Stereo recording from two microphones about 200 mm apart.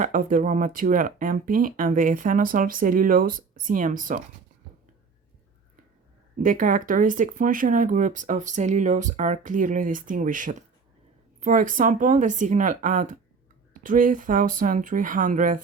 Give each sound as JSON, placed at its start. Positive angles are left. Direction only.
{"t": 0.0, "sound": "speech", "side_deg": -40}
{"t": 6.4, "sound": "speech", "side_deg": -40}